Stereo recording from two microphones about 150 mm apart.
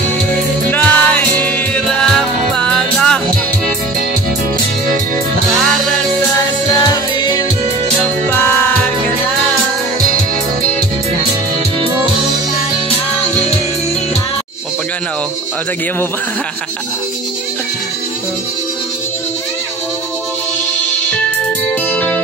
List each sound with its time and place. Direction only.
0.7 s music: 10° left (ahead or behind)
5.5 s music: centre (ahead or behind)
6.7 s music: 25° left (ahead or behind)
8.3 s music: 15° left (ahead or behind)
21.9 s music: 10° left (ahead or behind)